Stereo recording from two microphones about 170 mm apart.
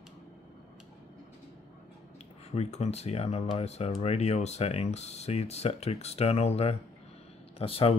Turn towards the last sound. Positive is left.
turn(degrees=35)  # may be behind; listen again after turning